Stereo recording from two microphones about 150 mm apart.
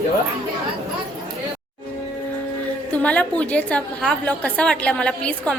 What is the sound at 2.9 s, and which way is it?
A woman's voice, 10° left (ahead or behind).